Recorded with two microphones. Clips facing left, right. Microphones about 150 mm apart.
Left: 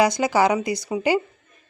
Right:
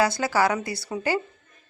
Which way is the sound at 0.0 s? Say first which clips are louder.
Left 4 dB; 15° left (ahead or behind).